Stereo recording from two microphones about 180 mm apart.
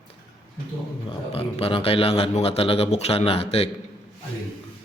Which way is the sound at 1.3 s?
35° left (ahead or behind).